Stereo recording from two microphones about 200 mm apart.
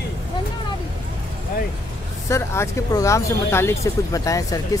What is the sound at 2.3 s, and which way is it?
Speech, 15° left (ahead or behind).